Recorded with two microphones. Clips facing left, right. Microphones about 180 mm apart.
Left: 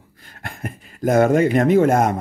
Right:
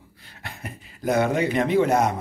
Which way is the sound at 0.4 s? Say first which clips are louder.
Left 6 dB; 50° left (ahead or behind).